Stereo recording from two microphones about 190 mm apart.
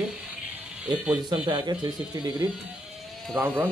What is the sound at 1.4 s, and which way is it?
Speech, 25° right (ahead or behind).